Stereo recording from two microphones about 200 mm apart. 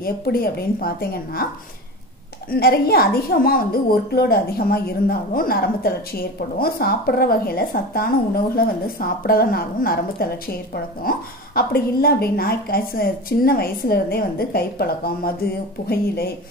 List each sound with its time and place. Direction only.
0.0 s a woman's voice: 50° left (ahead or behind)
2.5 s a woman's voice: 50° left (ahead or behind)